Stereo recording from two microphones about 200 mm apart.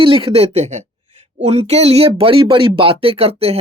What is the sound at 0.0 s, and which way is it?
Speech, 25° right (ahead or behind).